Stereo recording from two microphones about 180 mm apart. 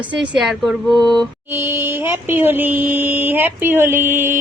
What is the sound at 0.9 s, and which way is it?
Speech, 25° right (ahead or behind).